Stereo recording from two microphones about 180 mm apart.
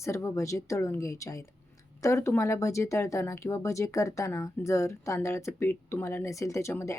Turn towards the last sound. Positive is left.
turn(degrees=15)  # may be behind; listen again after turning